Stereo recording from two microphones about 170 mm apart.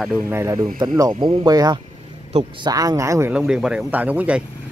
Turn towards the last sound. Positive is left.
turn(degrees=-10)  # may be behind; listen again after turning